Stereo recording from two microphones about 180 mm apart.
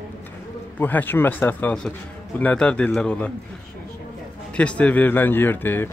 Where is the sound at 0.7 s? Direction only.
10° left (ahead or behind).